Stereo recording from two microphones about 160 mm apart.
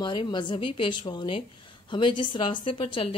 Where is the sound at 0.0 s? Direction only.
30° left (ahead or behind).